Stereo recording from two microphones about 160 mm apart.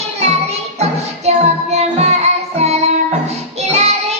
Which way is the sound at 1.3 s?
45° right (ahead or behind).